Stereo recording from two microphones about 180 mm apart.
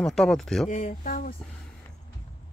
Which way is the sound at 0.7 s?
45° left (ahead or behind).